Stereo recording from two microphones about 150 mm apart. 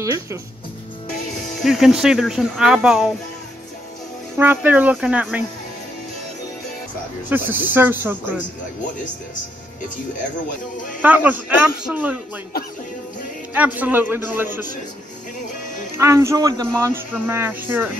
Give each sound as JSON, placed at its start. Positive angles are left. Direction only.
{"t": 0.0, "sound": "speech", "side_deg": -20}
{"t": 1.6, "sound": "speech", "side_deg": -5}
{"t": 4.4, "sound": "speech", "side_deg": -10}
{"t": 7.2, "sound": "speech", "side_deg": -15}
{"t": 11.0, "sound": "speech", "side_deg": -10}
{"t": 13.5, "sound": "speech", "side_deg": -10}
{"t": 16.0, "sound": "speech", "side_deg": -20}